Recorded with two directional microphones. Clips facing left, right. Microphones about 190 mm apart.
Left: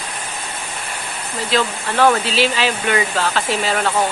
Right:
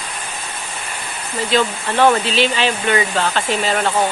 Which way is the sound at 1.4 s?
Centre (ahead or behind).